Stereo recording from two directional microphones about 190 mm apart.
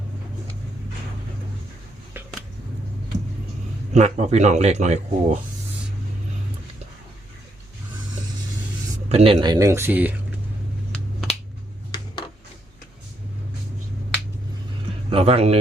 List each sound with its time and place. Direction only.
3.9 s speech: 35° right (ahead or behind)
9.0 s speech: 30° right (ahead or behind); by 10.2 s 10° right (ahead or behind)
15.1 s speech: 30° right (ahead or behind)